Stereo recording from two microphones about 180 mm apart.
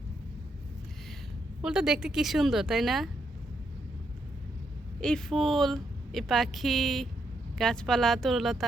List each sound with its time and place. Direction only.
1.6 s speech: 5° right (ahead or behind)
4.9 s speech: 5° left (ahead or behind)